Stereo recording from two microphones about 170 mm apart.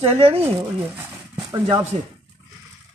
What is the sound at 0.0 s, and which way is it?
Speech, 35° right (ahead or behind).